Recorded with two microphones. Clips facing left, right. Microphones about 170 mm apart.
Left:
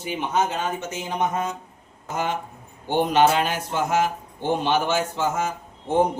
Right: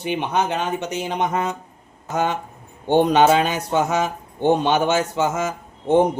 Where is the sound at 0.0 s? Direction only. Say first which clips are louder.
Right 2 dB; 65° right (ahead or behind).